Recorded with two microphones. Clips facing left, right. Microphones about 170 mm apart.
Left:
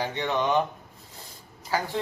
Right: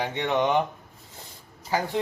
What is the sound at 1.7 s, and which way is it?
Speech, 20° right (ahead or behind).